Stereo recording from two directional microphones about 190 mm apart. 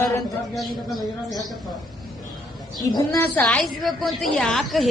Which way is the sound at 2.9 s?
10° left (ahead or behind).